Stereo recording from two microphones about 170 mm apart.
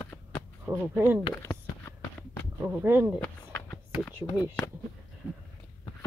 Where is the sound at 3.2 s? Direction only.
10° left (ahead or behind).